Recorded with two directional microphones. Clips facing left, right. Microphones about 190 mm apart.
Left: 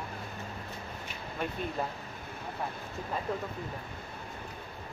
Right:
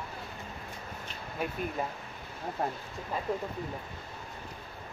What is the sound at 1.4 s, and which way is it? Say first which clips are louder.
Speech: right 1 dB; 5° right (ahead or behind).